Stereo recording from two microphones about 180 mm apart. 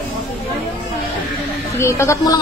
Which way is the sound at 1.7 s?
15° left (ahead or behind).